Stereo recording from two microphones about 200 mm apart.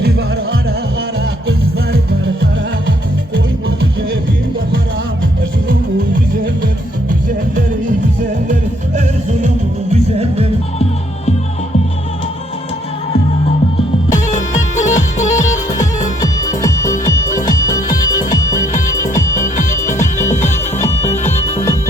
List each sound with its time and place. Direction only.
1.5 s music: 65° right (ahead or behind)
9.9 s music: 30° right (ahead or behind)
14.3 s music: 35° left (ahead or behind)
15.8 s music: 15° left (ahead or behind)
17.2 s music: 40° left (ahead or behind)
17.5 s music: 20° left (ahead or behind)
18.5 s music: 40° left (ahead or behind)